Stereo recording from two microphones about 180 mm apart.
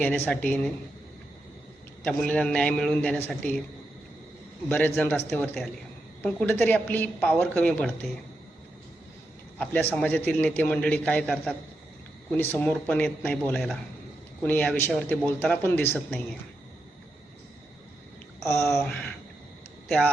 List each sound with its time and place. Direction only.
0.0 s a man's voice: 10° left (ahead or behind)
2.0 s a man's voice: 5° left (ahead or behind)
4.7 s a man's voice: 10° left (ahead or behind)
9.6 s a man's voice: 10° left (ahead or behind)
18.4 s a man's voice: 15° left (ahead or behind)